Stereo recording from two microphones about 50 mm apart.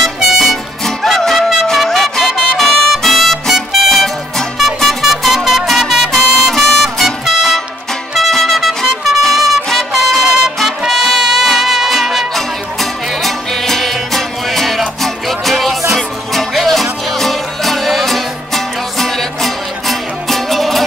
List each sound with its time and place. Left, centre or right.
0.0 s music: centre